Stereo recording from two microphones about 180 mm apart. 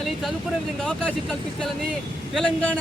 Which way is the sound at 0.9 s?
5° left (ahead or behind).